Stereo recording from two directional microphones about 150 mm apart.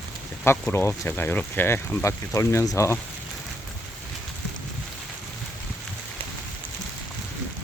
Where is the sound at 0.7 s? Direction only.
15° left (ahead or behind).